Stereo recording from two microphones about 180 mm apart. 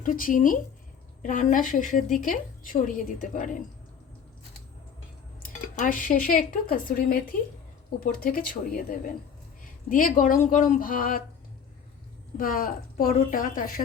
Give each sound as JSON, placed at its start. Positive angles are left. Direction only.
{"t": 0.0, "sound": "a woman's voice", "side_deg": 50}
{"t": 5.4, "sound": "speech", "side_deg": 45}
{"t": 9.9, "sound": "a woman's voice", "side_deg": 50}
{"t": 12.4, "sound": "a woman's voice", "side_deg": 50}